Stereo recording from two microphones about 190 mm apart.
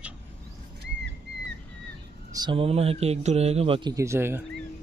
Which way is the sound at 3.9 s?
15° right (ahead or behind).